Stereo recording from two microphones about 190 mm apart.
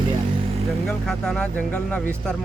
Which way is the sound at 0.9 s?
5° left (ahead or behind).